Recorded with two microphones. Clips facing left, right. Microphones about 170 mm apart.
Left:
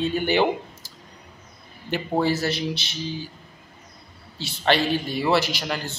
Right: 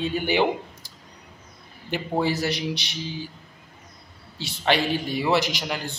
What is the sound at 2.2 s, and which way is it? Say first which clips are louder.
Speech: left 1 dB; 15° right (ahead or behind).